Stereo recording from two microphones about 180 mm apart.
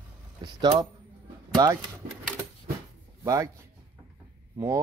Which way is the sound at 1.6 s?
20° right (ahead or behind).